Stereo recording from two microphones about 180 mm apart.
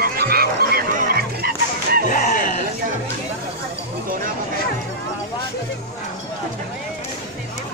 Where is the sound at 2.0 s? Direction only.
45° left (ahead or behind).